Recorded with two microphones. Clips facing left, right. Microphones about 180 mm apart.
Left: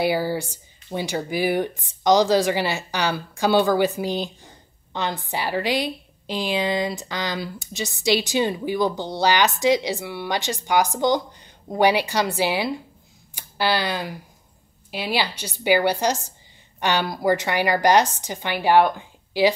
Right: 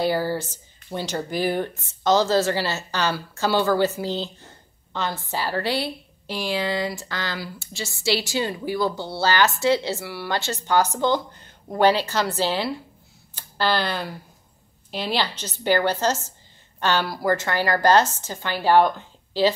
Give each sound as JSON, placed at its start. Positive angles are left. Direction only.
{"t": 0.0, "sound": "a woman's voice", "side_deg": 10}